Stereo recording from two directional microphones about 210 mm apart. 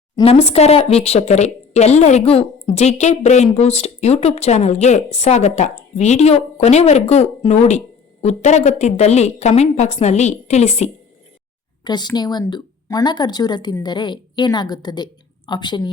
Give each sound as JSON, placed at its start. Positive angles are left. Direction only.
{"t": 0.2, "sound": "speech", "side_deg": 30}
{"t": 11.9, "sound": "a woman's voice", "side_deg": 20}